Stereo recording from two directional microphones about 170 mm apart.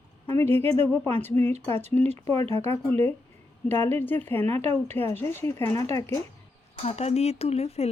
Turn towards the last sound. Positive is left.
turn(degrees=40)  # may be behind; listen again after turning